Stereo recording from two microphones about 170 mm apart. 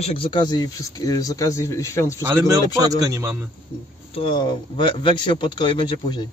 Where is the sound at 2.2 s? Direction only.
15° right (ahead or behind).